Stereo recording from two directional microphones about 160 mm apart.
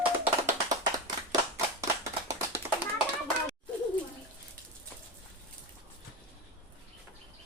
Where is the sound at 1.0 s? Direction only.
25° right (ahead or behind).